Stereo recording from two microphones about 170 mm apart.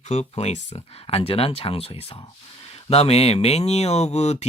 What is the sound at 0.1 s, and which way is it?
Speech, 40° left (ahead or behind).